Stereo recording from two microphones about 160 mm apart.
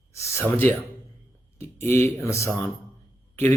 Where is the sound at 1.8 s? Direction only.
15° left (ahead or behind).